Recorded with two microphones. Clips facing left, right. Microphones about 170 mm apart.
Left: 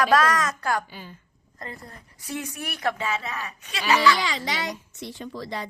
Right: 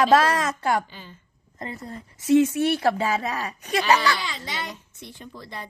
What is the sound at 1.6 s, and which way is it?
Speech, 20° right (ahead or behind).